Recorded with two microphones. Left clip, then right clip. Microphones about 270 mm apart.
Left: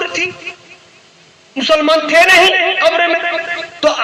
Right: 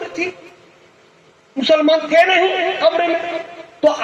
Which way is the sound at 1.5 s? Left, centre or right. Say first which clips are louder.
Left 2 dB; left.